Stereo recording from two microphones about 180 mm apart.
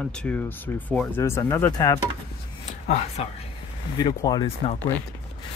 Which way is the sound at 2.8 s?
35° left (ahead or behind).